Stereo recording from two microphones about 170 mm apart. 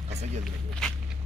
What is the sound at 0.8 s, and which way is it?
Walk, 5° left (ahead or behind).